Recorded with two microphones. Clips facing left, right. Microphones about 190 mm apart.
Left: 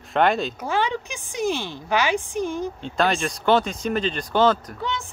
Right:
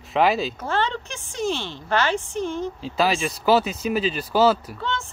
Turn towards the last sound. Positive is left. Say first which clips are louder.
# even
turn(degrees=15)  # may be behind; listen again after turning